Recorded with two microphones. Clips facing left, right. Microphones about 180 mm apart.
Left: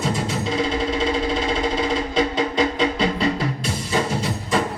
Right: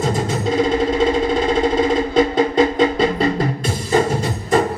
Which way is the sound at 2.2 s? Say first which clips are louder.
Right 6 dB; 45° right (ahead or behind).